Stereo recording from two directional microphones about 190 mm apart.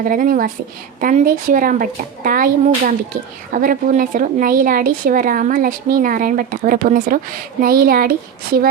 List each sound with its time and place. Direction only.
0.0 s a woman's voice: 50° right (ahead or behind)